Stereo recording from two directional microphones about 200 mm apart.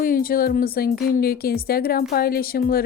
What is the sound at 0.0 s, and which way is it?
Speech, 45° left (ahead or behind).